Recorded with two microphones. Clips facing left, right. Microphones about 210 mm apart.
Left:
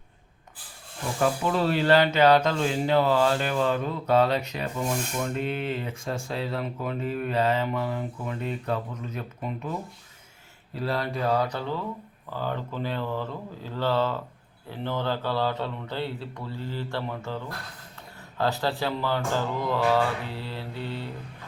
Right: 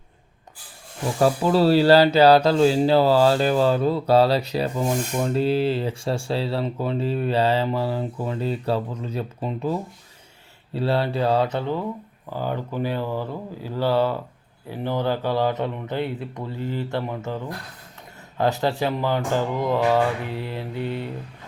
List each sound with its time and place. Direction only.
1.2 s speech: 35° right (ahead or behind)
10.8 s speech: 30° right (ahead or behind)
18.3 s speech: 20° right (ahead or behind)